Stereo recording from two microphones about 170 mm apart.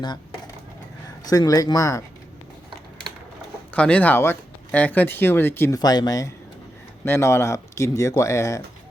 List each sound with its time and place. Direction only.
1.3 s speech: 20° left (ahead or behind)
3.7 s speech: 5° left (ahead or behind)